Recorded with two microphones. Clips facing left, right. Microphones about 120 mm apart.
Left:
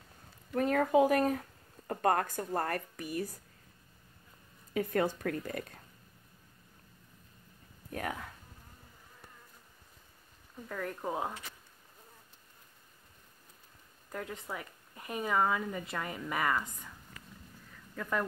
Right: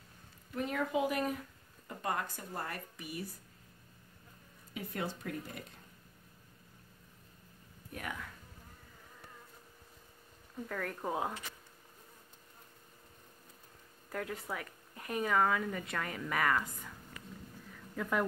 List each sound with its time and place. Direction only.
0.6 s speech: 45° left (ahead or behind)
4.7 s speech: 55° left (ahead or behind)
7.9 s speech: 45° left (ahead or behind)
10.7 s speech: 5° left (ahead or behind)
14.1 s speech: centre (ahead or behind)